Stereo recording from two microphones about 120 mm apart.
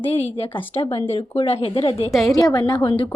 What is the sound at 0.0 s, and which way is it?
Speech, 55° left (ahead or behind).